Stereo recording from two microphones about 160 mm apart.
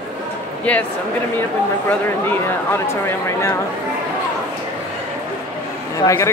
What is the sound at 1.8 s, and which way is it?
Speech, 15° left (ahead or behind).